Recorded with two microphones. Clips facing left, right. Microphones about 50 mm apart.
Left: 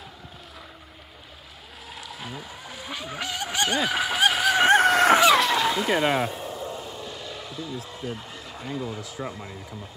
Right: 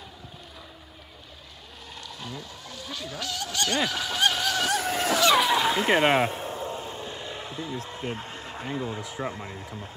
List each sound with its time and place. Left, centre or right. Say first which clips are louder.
2.0 s speech: left 1 dB; centre
4.7 s chicken: left 9 dB; left
5.4 s a sound: even; centre
5.9 s a sound: right 2 dB; right
8.8 s speech: right 1 dB; right
9.4 s speech: right 1 dB; centre